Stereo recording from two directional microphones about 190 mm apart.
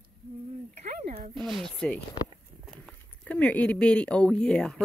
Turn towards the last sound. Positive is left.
turn(degrees=5)  # may be behind; listen again after turning